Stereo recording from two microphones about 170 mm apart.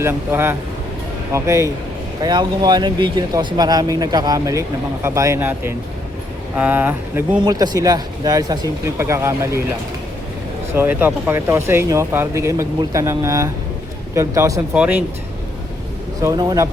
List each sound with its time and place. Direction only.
0.0 s speech: 15° right (ahead or behind)
7.4 s speech: 25° right (ahead or behind)
10.8 s speech: 10° right (ahead or behind)
16.2 s speech: 20° right (ahead or behind)